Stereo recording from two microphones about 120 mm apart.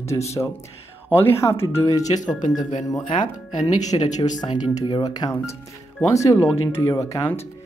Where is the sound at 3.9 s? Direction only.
40° left (ahead or behind); by 7.4 s 20° left (ahead or behind).